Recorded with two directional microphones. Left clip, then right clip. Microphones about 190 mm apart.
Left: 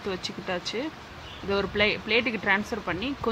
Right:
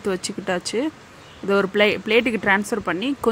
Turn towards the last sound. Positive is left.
turn(degrees=-20)  # may be behind; listen again after turning